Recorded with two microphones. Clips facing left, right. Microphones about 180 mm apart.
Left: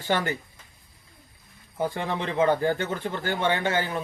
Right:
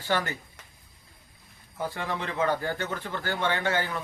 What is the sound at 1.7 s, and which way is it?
Speech, 25° left (ahead or behind).